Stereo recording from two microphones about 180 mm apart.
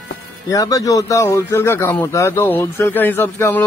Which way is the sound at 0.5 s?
20° left (ahead or behind).